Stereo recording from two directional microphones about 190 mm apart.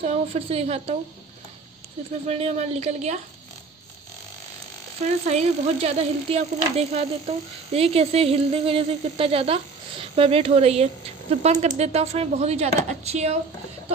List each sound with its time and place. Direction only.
0.0 s speech: 35° right (ahead or behind)
2.2 s speech: 35° right (ahead or behind)
5.0 s speech: 35° right (ahead or behind)